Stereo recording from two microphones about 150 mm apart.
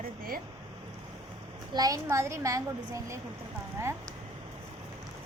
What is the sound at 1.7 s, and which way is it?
A woman's voice, 25° right (ahead or behind).